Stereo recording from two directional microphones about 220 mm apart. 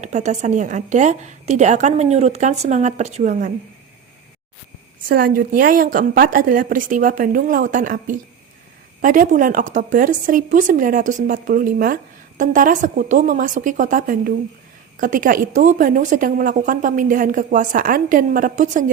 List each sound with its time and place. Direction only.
0.0 s a woman's voice: 30° right (ahead or behind)
5.0 s a woman's voice: 40° right (ahead or behind)